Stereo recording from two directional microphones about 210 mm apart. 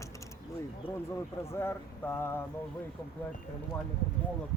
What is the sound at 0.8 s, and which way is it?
Speech, 25° left (ahead or behind).